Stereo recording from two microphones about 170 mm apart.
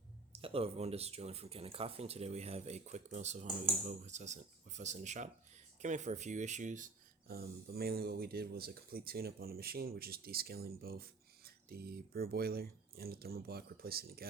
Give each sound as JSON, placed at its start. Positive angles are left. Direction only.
{"t": 0.3, "sound": "speech", "side_deg": -35}
{"t": 7.3, "sound": "speech", "side_deg": -65}